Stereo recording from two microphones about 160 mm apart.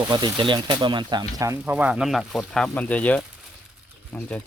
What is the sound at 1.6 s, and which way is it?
Speech, 10° right (ahead or behind).